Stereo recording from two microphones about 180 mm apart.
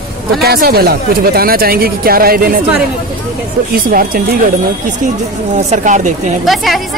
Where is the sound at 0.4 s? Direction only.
60° right (ahead or behind).